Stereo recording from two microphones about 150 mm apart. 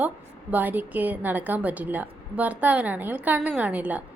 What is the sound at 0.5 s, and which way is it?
A woman's voice, 10° right (ahead or behind).